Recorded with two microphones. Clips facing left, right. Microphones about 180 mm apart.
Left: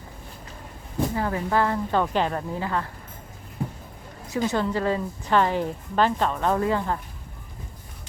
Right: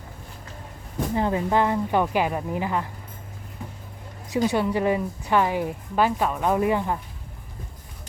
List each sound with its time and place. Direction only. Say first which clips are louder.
1.1 s a woman's voice: right 4 dB; 20° right (ahead or behind)
4.3 s a woman's voice: right 2 dB; 15° right (ahead or behind)